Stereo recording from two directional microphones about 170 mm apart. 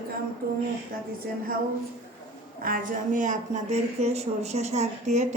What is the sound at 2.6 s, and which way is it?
Speech, 55° right (ahead or behind).